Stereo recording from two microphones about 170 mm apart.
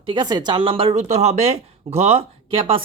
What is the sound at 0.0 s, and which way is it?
Speech, 25° right (ahead or behind).